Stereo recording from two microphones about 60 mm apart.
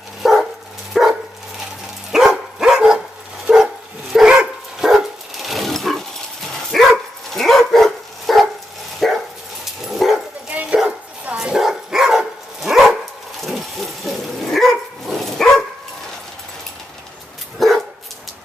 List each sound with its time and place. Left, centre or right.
0.2 s dog: centre
2.1 s dog: centre
10.5 s dog: right
11.5 s dog: centre
17.6 s dog: centre